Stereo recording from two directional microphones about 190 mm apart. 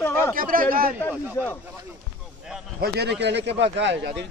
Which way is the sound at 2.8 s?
60° right (ahead or behind).